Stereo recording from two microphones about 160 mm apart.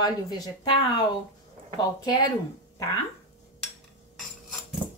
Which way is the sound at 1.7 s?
25° left (ahead or behind).